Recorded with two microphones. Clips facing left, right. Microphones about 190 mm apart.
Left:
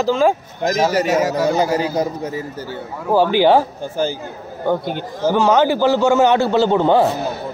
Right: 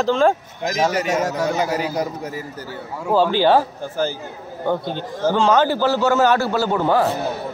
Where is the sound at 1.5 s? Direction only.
30° left (ahead or behind).